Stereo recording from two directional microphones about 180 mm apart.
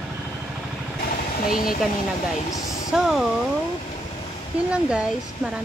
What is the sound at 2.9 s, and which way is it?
Speech, centre (ahead or behind).